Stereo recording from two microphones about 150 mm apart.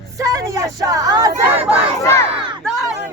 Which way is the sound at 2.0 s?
20° left (ahead or behind).